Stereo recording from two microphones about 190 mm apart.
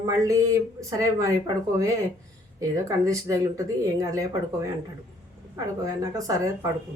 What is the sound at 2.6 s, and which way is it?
Speech, 15° right (ahead or behind).